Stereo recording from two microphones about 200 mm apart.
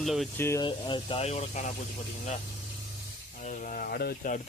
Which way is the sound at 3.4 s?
40° left (ahead or behind).